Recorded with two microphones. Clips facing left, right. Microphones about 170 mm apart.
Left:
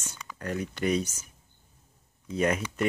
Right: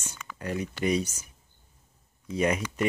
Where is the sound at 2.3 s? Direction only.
10° right (ahead or behind).